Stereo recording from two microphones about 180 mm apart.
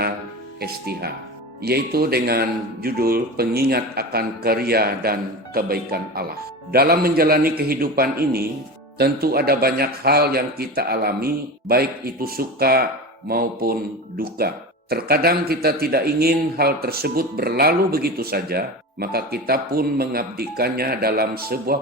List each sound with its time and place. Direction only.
0.6 s a man's voice: 60° right (ahead or behind)